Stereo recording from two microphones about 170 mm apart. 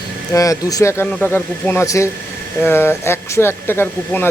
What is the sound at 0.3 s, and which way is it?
Speech, 20° left (ahead or behind).